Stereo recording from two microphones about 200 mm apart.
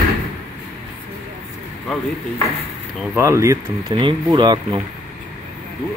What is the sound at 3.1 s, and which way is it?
Speech, 15° right (ahead or behind).